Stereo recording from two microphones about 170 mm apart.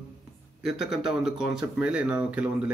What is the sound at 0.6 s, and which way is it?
Speech, 5° right (ahead or behind).